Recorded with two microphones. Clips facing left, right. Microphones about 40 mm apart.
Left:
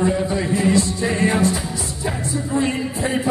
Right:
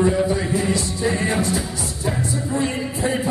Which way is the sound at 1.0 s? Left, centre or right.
Centre.